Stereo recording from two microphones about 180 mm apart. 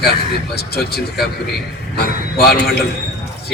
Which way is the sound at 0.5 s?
60° left (ahead or behind).